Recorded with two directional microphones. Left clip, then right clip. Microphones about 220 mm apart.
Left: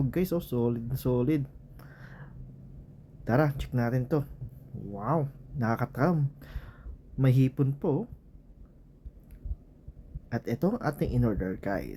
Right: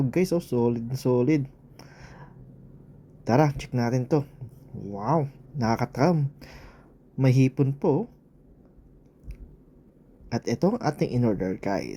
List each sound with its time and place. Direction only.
0.1 s speech: 5° right (ahead or behind)
10.2 s speech: 10° right (ahead or behind)